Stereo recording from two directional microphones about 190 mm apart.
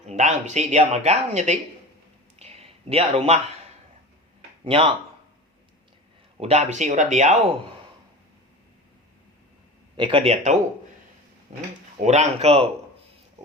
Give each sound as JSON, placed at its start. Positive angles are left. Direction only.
{"t": 0.0, "sound": "speech", "side_deg": -35}
{"t": 2.4, "sound": "a sound", "side_deg": -35}
{"t": 4.6, "sound": "speech", "side_deg": -30}
{"t": 6.3, "sound": "speech", "side_deg": -35}
{"t": 10.0, "sound": "speech", "side_deg": -30}
{"t": 12.0, "sound": "speech", "side_deg": -35}